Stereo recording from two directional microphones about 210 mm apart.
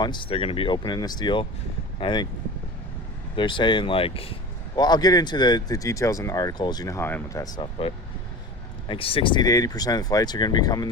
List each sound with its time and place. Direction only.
0.0 s speech: 20° left (ahead or behind)
3.3 s speech: 20° left (ahead or behind)